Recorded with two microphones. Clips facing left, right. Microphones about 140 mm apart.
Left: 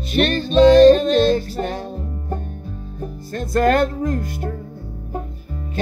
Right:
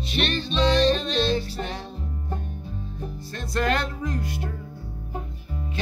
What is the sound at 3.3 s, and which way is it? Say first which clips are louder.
Music: left 9 dB; 45° left (ahead or behind).